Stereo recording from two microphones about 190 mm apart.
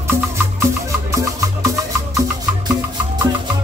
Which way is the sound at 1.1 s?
15° right (ahead or behind).